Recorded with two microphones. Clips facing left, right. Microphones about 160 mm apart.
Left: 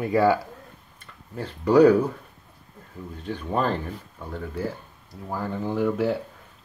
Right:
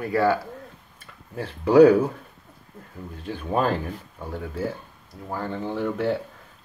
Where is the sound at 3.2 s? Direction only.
10° right (ahead or behind).